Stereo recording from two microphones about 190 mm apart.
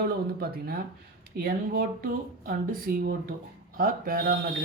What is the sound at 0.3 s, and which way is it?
Speech, 50° right (ahead or behind).